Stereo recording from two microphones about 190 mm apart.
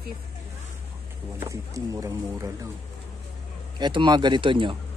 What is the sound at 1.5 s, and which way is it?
Speech, 15° right (ahead or behind).